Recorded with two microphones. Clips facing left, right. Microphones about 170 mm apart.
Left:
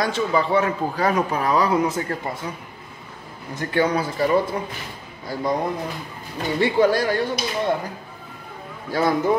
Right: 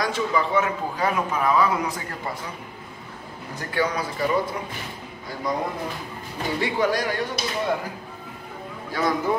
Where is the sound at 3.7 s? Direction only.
25° left (ahead or behind).